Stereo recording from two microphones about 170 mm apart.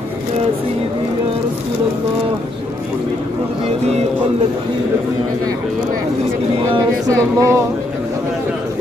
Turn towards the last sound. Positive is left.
turn(degrees=-15)  # may be behind; listen again after turning